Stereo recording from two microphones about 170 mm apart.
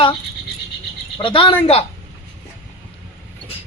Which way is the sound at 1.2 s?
30° left (ahead or behind).